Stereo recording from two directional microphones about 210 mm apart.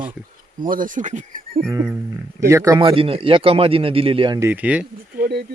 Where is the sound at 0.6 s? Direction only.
40° right (ahead or behind).